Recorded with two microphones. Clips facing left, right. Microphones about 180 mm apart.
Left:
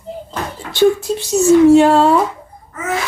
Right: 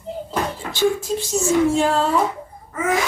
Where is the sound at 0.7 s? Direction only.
70° left (ahead or behind).